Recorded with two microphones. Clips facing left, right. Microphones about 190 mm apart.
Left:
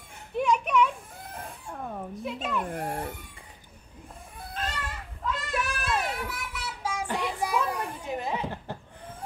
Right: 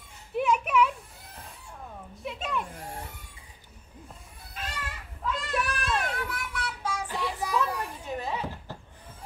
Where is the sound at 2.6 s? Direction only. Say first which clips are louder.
Left 8 dB; 55° left (ahead or behind).